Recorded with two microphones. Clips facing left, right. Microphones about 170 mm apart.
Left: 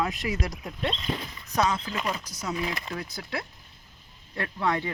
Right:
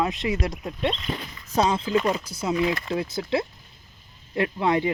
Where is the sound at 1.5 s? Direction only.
25° right (ahead or behind).